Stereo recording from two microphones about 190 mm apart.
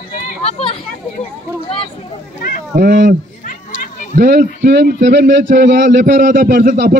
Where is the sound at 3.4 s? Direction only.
45° left (ahead or behind).